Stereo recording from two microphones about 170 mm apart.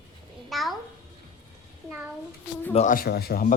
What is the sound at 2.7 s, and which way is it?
Speech, 45° left (ahead or behind).